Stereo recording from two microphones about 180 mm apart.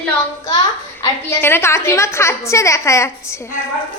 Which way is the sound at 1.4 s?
10° left (ahead or behind).